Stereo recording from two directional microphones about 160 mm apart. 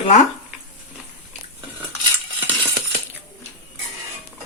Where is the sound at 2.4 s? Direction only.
10° right (ahead or behind).